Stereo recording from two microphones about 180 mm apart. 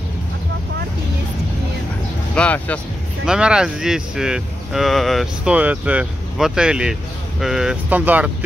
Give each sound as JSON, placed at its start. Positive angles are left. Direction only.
{"t": 2.3, "sound": "speech", "side_deg": 5}
{"t": 3.3, "sound": "speech", "side_deg": -5}